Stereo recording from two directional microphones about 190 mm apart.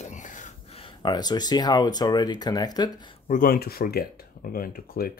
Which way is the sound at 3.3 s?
50° left (ahead or behind).